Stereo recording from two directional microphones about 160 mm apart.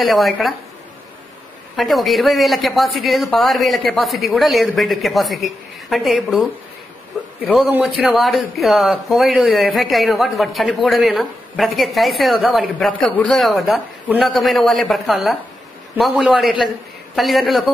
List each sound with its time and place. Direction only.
0.0 s speech: centre (ahead or behind)
1.8 s speech: centre (ahead or behind)
7.5 s speech: 10° right (ahead or behind)